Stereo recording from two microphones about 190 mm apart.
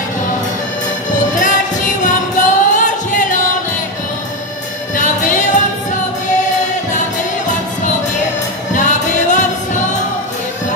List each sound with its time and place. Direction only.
1.4 s music: 40° left (ahead or behind)
4.9 s music: 40° left (ahead or behind)
8.7 s music: 40° left (ahead or behind)